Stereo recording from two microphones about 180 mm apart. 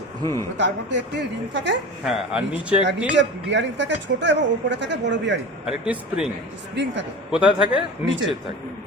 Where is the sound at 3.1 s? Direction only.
85° right.